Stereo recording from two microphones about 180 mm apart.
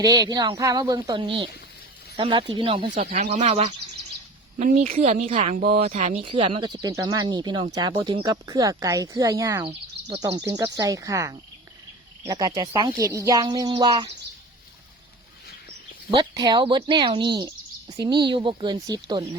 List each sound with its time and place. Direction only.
0.0 s speech: 20° right (ahead or behind)
2.9 s speech: 45° right (ahead or behind)
6.2 s speech: 30° right (ahead or behind)
16.1 s speech: 25° right (ahead or behind)